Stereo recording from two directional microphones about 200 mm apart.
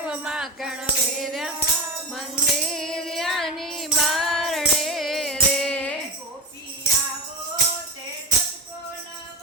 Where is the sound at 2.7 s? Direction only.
5° left (ahead or behind).